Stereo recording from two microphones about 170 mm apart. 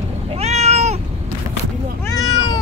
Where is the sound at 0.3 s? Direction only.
40° right (ahead or behind).